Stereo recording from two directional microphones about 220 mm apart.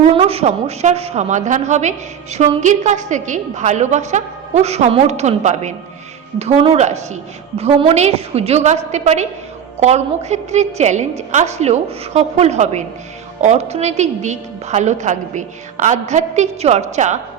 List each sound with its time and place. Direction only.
0.0 s a woman's voice: 25° right (ahead or behind)